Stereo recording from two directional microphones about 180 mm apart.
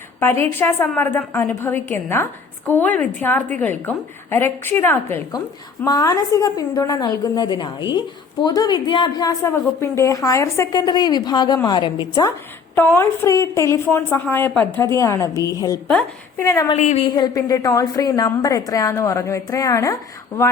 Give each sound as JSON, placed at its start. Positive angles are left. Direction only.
{"t": 0.2, "sound": "a woman's voice", "side_deg": 10}
{"t": 12.7, "sound": "a woman's voice", "side_deg": 10}
{"t": 16.7, "sound": "a woman's voice", "side_deg": 40}
{"t": 17.1, "sound": "a woman's voice", "side_deg": 20}